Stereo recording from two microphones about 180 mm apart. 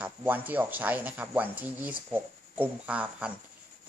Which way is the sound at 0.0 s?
10° right (ahead or behind).